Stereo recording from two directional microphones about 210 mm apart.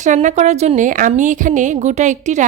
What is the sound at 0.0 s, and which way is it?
Speech, 35° right (ahead or behind).